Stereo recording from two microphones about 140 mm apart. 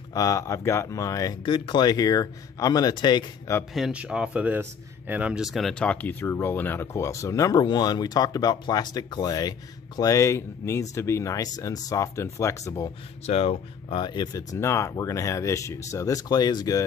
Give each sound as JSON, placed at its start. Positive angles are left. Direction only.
{"t": 0.1, "sound": "speech", "side_deg": 25}
{"t": 3.7, "sound": "speech", "side_deg": -5}
{"t": 13.2, "sound": "speech", "side_deg": 45}